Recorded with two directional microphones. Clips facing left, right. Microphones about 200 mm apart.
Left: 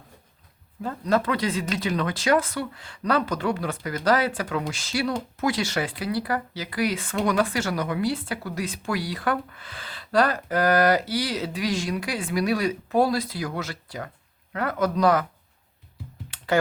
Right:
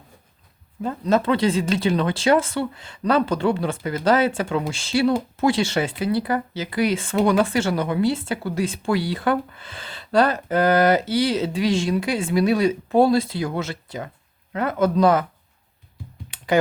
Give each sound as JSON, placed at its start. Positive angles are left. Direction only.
{"t": 0.8, "sound": "speech", "side_deg": -20}
{"t": 16.3, "sound": "computer keyboard", "side_deg": -15}